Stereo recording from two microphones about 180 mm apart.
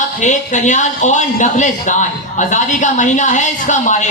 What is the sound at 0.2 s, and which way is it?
Speech, 40° left (ahead or behind).